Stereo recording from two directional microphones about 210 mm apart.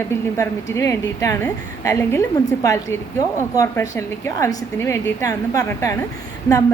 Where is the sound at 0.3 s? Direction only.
15° left (ahead or behind).